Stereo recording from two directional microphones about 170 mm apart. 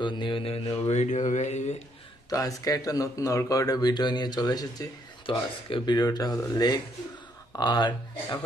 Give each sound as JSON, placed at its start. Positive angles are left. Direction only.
{"t": 0.0, "sound": "speech", "side_deg": 25}
{"t": 2.2, "sound": "speech", "side_deg": 20}